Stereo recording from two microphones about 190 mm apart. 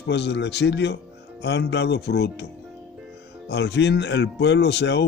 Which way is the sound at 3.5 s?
65° left (ahead or behind).